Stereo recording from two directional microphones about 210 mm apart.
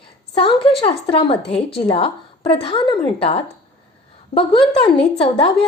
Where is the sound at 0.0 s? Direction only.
25° left (ahead or behind).